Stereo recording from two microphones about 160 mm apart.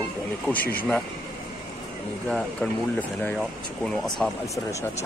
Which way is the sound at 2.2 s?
5° left (ahead or behind).